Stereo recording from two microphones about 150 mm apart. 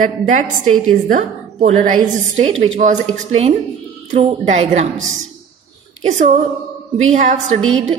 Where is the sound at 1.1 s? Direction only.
55° right (ahead or behind).